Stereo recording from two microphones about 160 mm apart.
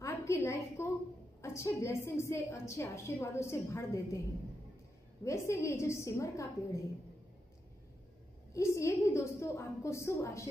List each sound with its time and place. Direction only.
0.0 s a sound: 20° left (ahead or behind)
1.4 s a woman's voice: 15° left (ahead or behind)
5.2 s a woman's voice: 20° left (ahead or behind)
8.5 s a woman's voice: 20° left (ahead or behind)